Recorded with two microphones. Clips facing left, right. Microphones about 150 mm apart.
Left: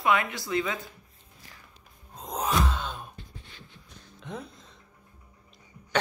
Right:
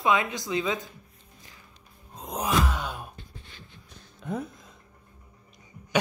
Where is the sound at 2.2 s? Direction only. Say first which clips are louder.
Right 1 dB; 10° right (ahead or behind).